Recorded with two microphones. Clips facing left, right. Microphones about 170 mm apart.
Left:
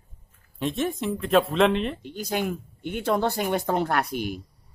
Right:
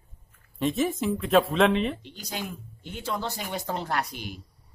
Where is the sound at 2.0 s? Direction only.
50° left (ahead or behind).